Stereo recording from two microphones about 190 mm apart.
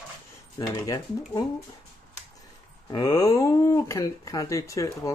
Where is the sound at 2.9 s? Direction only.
20° left (ahead or behind).